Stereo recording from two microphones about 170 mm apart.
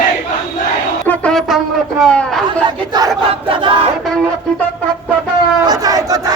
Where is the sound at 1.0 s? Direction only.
5° left (ahead or behind).